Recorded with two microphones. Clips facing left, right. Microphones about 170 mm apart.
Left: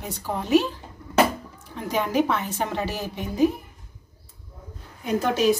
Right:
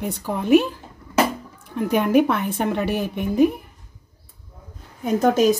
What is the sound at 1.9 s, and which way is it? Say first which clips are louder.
A woman's voice: right 5 dB; 55° right (ahead or behind).